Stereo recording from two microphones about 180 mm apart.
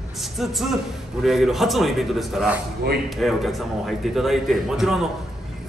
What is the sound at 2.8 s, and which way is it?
Speech, 60° right (ahead or behind).